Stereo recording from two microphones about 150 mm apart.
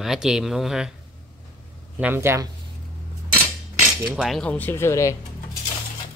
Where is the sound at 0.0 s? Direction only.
5° right (ahead or behind).